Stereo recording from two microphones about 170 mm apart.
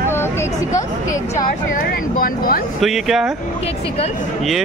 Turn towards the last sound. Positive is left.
turn(degrees=0)  # may be behind; listen again after turning